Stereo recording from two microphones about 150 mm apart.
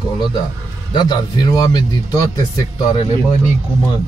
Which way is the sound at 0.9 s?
30° left (ahead or behind).